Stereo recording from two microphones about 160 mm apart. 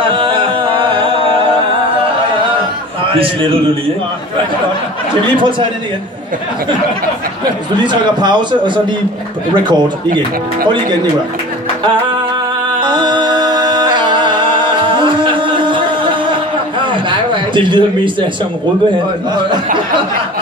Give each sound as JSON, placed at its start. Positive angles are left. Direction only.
{"t": 0.0, "sound": "music", "side_deg": -35}
{"t": 3.1, "sound": "a man's voice", "side_deg": -35}
{"t": 5.3, "sound": "a man's voice", "side_deg": -30}
{"t": 7.7, "sound": "a man's voice", "side_deg": -30}
{"t": 12.8, "sound": "music", "side_deg": -30}
{"t": 16.8, "sound": "a sound", "side_deg": -30}